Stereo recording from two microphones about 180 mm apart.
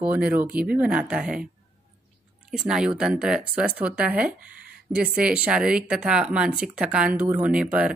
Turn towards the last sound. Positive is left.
turn(degrees=-10)  # may be behind; listen again after turning